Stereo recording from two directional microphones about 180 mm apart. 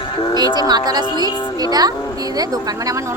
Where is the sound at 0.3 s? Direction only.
25° right (ahead or behind).